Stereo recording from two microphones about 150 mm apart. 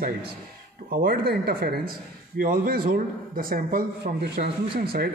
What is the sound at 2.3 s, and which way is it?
A man's voice, 75° right (ahead or behind).